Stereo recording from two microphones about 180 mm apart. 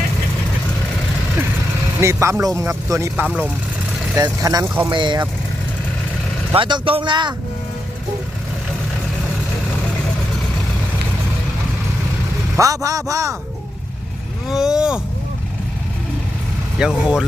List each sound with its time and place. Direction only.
2.0 s speech: 15° right (ahead or behind)
3.2 s speech: 5° right (ahead or behind)
4.1 s speech: 20° right (ahead or behind)
4.9 s speech: 25° right (ahead or behind)
6.5 s speech: 25° right (ahead or behind)
12.5 s speech: 20° right (ahead or behind)
14.4 s boat: 5° right (ahead or behind)
16.7 s speech: 5° right (ahead or behind)